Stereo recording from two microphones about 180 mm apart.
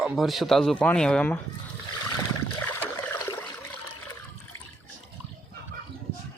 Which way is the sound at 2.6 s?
10° left (ahead or behind).